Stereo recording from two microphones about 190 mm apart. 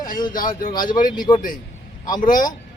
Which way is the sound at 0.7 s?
20° left (ahead or behind).